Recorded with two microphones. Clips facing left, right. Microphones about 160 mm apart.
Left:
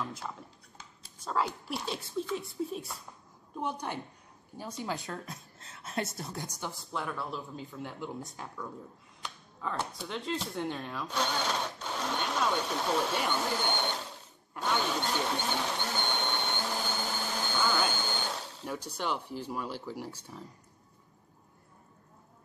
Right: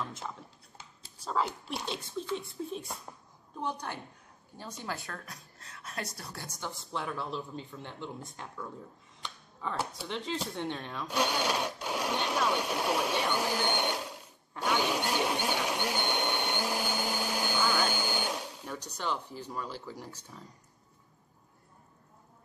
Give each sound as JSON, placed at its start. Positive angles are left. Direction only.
{"t": 1.2, "sound": "a woman's voice", "side_deg": 0}
{"t": 6.4, "sound": "speech", "side_deg": 10}
{"t": 6.9, "sound": "speech", "side_deg": 0}
{"t": 11.1, "sound": "speech", "side_deg": -10}
{"t": 14.6, "sound": "blender", "side_deg": -10}
{"t": 18.9, "sound": "speech", "side_deg": 10}